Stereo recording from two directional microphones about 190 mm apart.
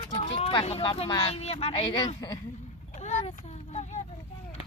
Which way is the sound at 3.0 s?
35° left (ahead or behind).